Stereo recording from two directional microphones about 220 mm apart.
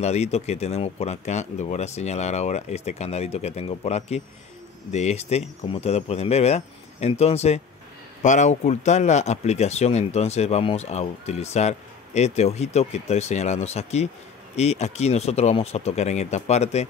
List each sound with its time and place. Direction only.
0.0 s speech: 30° left (ahead or behind)